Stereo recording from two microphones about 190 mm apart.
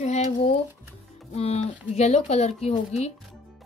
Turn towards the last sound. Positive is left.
turn(degrees=35)  # may be behind; listen again after turning